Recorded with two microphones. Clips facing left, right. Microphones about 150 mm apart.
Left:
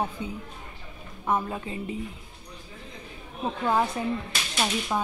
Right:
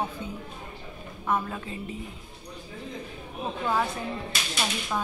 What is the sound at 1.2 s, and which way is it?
Speech, 15° left (ahead or behind).